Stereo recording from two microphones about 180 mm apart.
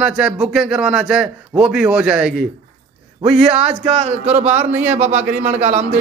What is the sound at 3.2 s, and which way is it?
Speech, 35° right (ahead or behind).